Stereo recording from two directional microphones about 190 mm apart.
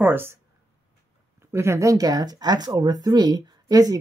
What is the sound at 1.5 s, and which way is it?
Speech, 15° right (ahead or behind).